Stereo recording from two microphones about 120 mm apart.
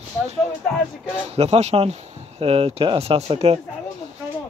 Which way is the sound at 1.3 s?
60° right (ahead or behind).